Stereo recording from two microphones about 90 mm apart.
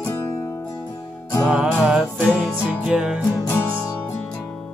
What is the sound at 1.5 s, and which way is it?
Music, 15° right (ahead or behind).